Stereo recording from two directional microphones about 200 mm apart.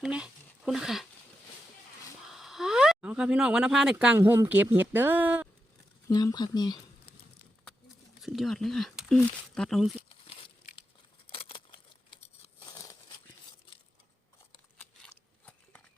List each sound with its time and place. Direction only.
0.0 s speech: 5° right (ahead or behind)
2.3 s speech: centre (ahead or behind)
6.1 s speech: 20° left (ahead or behind)
8.2 s speech: centre (ahead or behind)
10.1 s crumpling: 25° left (ahead or behind)
11.3 s tearing: 25° left (ahead or behind)